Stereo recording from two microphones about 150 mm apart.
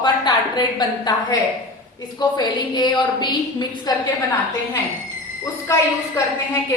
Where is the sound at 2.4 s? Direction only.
30° left (ahead or behind).